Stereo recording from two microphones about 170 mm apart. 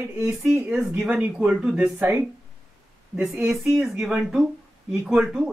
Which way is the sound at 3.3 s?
15° right (ahead or behind).